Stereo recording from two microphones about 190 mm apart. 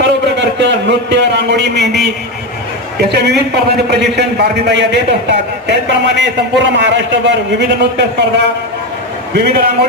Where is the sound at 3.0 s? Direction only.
60° right (ahead or behind).